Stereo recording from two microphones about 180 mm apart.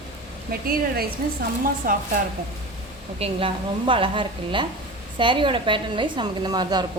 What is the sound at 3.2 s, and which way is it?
A woman's voice, 30° right (ahead or behind).